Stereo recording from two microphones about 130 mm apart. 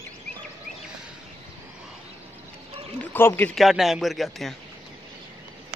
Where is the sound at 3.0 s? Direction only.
15° left (ahead or behind).